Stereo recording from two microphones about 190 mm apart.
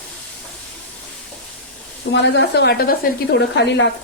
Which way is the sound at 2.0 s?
65° left (ahead or behind).